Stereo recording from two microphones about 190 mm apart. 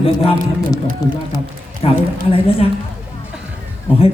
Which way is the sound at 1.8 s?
30° left (ahead or behind).